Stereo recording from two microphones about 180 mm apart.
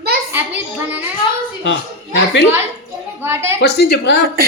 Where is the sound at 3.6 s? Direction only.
65° left (ahead or behind).